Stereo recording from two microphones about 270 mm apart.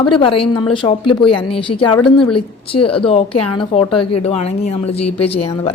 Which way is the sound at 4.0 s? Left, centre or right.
Left.